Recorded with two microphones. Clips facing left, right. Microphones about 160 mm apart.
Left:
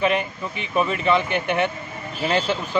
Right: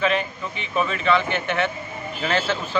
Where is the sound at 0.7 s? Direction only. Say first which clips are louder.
Left 1 dB; 15° left (ahead or behind).